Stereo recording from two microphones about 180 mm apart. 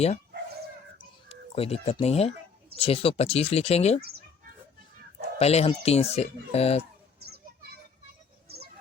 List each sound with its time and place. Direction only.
1.3 s speech: 35° left (ahead or behind)
5.4 s speech: 35° left (ahead or behind)
8.4 s music: 60° right (ahead or behind)